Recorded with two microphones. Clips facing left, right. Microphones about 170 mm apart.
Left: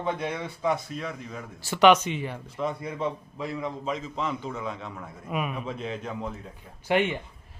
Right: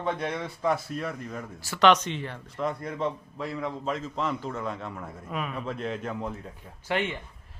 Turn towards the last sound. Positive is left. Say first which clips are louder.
# left 5 dB
turn(degrees=15)  # may be behind; listen again after turning